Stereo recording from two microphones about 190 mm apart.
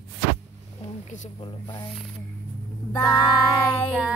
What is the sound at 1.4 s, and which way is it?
Speech, 25° left (ahead or behind).